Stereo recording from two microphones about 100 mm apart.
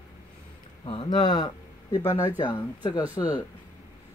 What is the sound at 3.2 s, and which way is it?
Speech, 45° left (ahead or behind).